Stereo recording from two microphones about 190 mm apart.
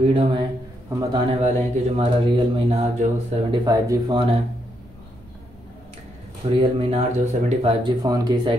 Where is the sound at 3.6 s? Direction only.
20° right (ahead or behind).